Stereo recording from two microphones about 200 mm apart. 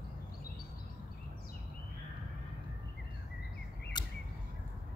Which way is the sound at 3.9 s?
20° left (ahead or behind).